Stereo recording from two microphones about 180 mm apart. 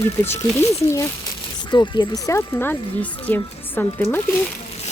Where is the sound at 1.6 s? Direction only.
25° left (ahead or behind).